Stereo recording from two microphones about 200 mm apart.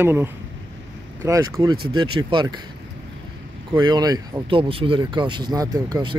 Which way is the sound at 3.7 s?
20° right (ahead or behind).